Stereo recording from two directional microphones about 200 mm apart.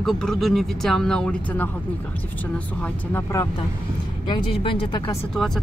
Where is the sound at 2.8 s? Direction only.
10° left (ahead or behind).